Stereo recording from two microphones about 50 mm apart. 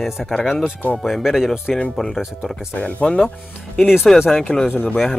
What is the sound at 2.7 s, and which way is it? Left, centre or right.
Speech, left.